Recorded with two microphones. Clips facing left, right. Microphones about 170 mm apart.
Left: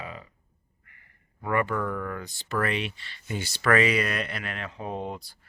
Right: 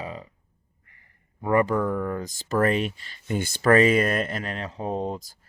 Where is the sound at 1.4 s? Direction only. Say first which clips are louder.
Right 5 dB; 35° right (ahead or behind).